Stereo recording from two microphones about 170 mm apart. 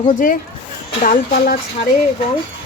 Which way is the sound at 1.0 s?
55° left (ahead or behind).